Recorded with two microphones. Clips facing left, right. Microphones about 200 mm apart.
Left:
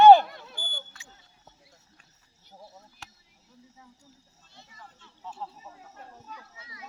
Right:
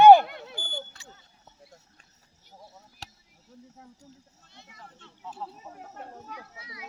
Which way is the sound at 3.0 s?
35° right (ahead or behind).